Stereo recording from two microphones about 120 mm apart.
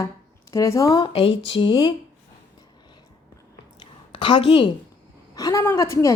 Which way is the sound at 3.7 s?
40° left (ahead or behind).